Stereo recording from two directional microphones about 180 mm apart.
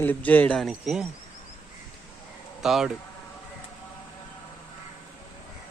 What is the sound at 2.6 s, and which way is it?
Speech, centre (ahead or behind).